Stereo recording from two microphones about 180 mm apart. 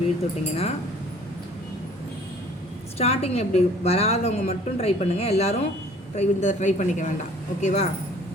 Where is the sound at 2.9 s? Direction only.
35° left (ahead or behind).